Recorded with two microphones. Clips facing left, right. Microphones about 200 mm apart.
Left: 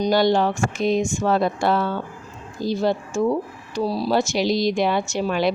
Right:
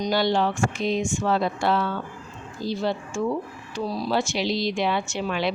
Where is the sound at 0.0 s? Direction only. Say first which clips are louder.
Left 4 dB; 45° left (ahead or behind).